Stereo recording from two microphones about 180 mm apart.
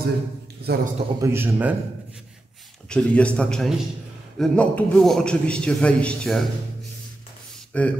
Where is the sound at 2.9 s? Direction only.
5° left (ahead or behind).